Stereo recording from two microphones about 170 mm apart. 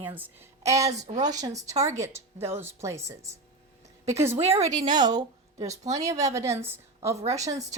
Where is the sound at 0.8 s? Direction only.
40° right (ahead or behind).